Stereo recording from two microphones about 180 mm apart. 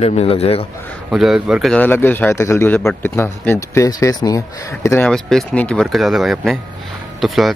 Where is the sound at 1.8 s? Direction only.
10° left (ahead or behind).